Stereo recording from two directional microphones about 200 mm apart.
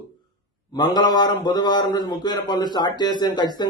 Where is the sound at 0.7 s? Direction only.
20° left (ahead or behind).